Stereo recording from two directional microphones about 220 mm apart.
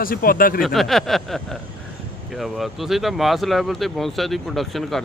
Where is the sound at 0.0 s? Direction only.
40° left (ahead or behind).